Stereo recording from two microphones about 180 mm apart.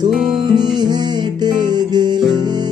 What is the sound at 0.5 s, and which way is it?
Music, 25° right (ahead or behind).